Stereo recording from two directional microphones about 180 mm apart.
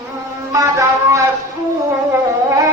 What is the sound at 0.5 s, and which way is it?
Music, 15° right (ahead or behind).